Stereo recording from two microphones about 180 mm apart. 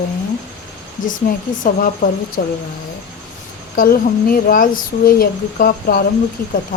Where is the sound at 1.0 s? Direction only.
50° left (ahead or behind).